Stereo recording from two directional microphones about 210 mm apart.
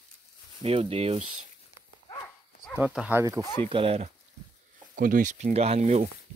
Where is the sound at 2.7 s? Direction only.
5° right (ahead or behind).